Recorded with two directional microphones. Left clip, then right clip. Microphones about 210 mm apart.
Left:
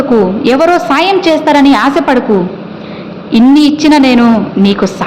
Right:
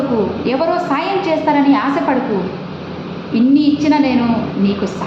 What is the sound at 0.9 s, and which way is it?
A woman's voice, 40° left (ahead or behind).